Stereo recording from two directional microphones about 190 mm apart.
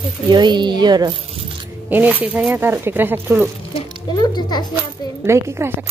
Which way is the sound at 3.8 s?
20° left (ahead or behind).